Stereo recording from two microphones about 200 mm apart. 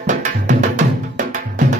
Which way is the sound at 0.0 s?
40° right (ahead or behind).